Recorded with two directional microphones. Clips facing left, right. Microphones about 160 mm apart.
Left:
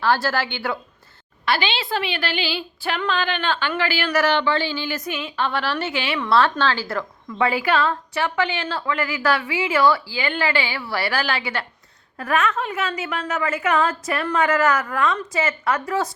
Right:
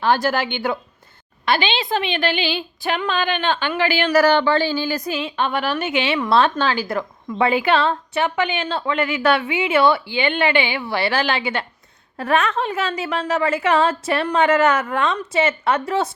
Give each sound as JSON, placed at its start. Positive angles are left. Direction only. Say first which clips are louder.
{"t": 0.0, "sound": "a woman's voice", "louder": "right 2 dB", "side_deg": -20}
{"t": 4.1, "sound": "a woman's voice", "louder": "right 4 dB", "side_deg": -35}
{"t": 5.4, "sound": "a woman's voice", "louder": "right 1 dB", "side_deg": -15}